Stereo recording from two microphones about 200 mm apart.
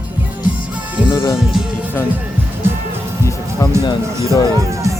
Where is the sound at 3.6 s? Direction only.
15° left (ahead or behind).